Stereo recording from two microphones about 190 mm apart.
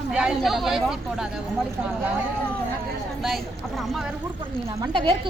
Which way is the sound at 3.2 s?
Centre (ahead or behind).